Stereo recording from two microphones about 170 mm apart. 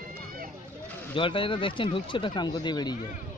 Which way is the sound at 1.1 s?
30° left (ahead or behind).